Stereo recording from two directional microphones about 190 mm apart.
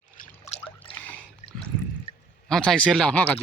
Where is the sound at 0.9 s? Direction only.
10° left (ahead or behind).